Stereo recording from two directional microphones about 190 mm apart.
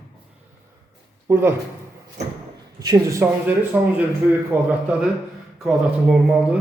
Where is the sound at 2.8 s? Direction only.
15° right (ahead or behind).